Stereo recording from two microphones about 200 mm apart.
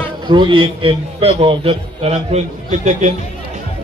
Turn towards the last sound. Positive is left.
turn(degrees=-35)  # may be behind; listen again after turning